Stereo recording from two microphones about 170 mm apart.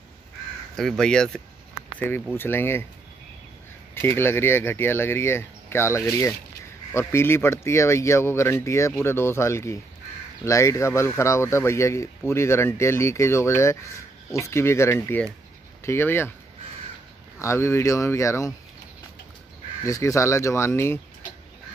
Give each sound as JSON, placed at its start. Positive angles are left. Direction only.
{"t": 0.7, "sound": "speech", "side_deg": 5}
{"t": 3.9, "sound": "speech", "side_deg": 15}
{"t": 17.4, "sound": "speech", "side_deg": 15}
{"t": 19.8, "sound": "speech", "side_deg": 20}